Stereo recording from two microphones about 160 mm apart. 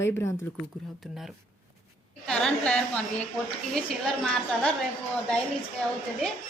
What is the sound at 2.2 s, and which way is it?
A woman's voice, 5° left (ahead or behind).